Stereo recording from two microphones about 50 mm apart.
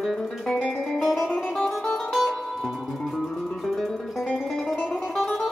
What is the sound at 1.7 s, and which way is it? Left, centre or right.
Music, centre.